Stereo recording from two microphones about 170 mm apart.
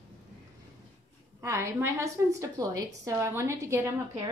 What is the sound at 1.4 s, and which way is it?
A woman's voice, 15° right (ahead or behind).